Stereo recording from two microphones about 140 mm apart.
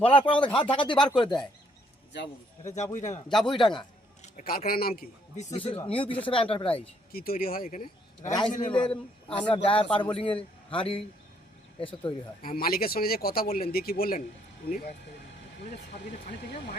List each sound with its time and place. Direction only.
0.0 s speech: 40° left (ahead or behind)
2.6 s speech: 55° left (ahead or behind)
4.2 s a man's voice: 75° left (ahead or behind)
5.5 s speech: 40° left (ahead or behind)
7.1 s speech: 90° left; by 8.4 s 60° left (ahead or behind)
8.6 s speech: 35° left (ahead or behind)
12.4 s speech: 90° left
14.7 s speech: 70° left (ahead or behind)